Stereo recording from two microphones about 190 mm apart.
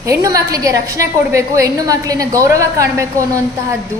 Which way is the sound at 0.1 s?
20° right (ahead or behind).